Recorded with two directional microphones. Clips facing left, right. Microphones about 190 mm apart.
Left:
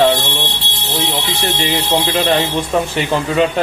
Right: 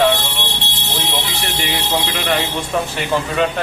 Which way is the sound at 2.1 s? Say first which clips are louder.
Left 5 dB; 30° left (ahead or behind).